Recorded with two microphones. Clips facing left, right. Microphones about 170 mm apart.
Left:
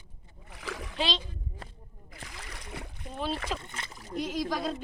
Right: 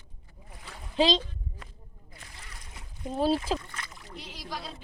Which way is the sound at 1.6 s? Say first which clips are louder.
Left 3 dB; 35° left (ahead or behind).